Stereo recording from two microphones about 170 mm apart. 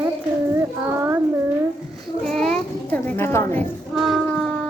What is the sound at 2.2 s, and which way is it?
A child's voice, 5° left (ahead or behind).